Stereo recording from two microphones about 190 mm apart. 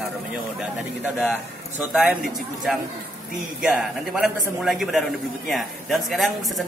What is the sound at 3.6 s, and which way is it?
A man's voice, centre (ahead or behind).